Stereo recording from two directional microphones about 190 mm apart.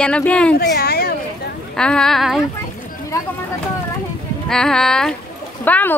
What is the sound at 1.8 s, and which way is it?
Speech, 5° left (ahead or behind).